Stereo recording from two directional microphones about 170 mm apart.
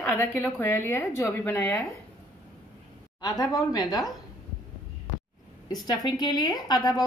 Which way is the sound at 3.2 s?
20° left (ahead or behind).